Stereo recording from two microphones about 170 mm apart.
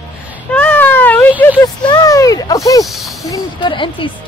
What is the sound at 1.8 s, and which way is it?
Speech, 20° left (ahead or behind).